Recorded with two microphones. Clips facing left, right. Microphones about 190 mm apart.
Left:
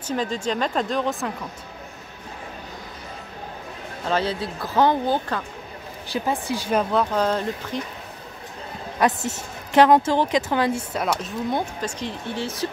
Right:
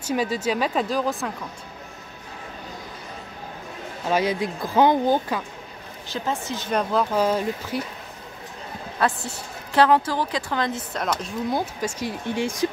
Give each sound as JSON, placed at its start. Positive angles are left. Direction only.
{"t": 0.0, "sound": "speech", "side_deg": -10}
{"t": 4.1, "sound": "speech", "side_deg": -15}
{"t": 6.1, "sound": "speech", "side_deg": 15}
{"t": 9.0, "sound": "a woman's voice", "side_deg": 20}
{"t": 11.5, "sound": "speech", "side_deg": -10}